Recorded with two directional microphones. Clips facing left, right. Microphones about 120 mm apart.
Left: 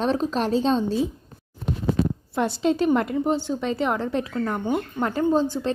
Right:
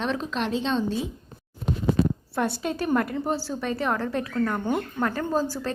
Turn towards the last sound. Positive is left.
turn(degrees=25)  # may be behind; listen again after turning